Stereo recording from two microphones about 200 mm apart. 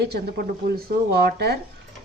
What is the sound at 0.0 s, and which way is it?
A woman's voice, 55° right (ahead or behind).